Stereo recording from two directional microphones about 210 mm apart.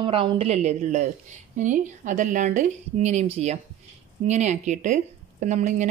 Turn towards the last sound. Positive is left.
turn(degrees=-35)  # may be behind; listen again after turning